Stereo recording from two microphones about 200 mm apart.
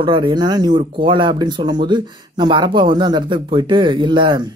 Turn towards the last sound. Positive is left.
turn(degrees=-20)  # may be behind; listen again after turning